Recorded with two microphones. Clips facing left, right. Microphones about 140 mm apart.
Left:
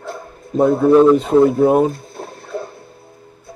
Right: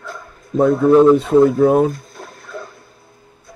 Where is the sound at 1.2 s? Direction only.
25° left (ahead or behind).